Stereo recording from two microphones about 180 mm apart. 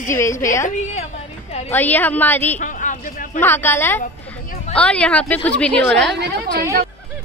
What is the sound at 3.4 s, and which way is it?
A woman's voice, 10° left (ahead or behind).